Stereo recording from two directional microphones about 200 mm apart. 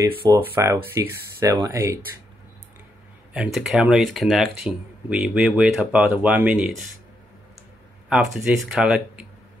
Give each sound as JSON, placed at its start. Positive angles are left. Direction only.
{"t": 0.1, "sound": "speech", "side_deg": -25}
{"t": 0.4, "sound": "speech", "side_deg": -15}
{"t": 3.3, "sound": "speech", "side_deg": 0}
{"t": 8.1, "sound": "speech", "side_deg": 0}